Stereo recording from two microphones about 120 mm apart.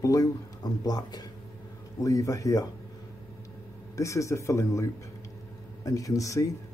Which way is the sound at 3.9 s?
25° left (ahead or behind).